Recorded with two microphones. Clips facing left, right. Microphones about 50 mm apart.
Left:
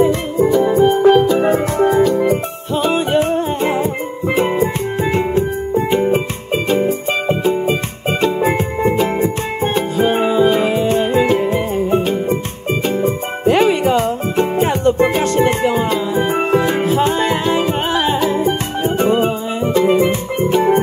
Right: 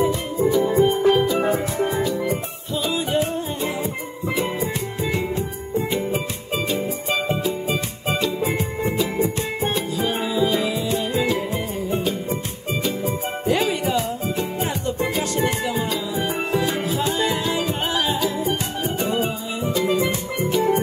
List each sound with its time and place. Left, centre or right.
0.0 s music: left